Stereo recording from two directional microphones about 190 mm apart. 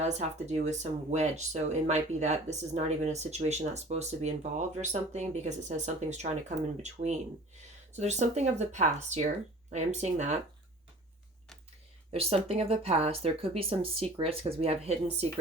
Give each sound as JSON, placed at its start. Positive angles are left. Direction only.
{"t": 0.0, "sound": "speech", "side_deg": -35}
{"t": 12.1, "sound": "speech", "side_deg": -30}